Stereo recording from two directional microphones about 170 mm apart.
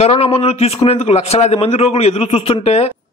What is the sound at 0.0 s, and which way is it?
A man's voice, 35° left (ahead or behind).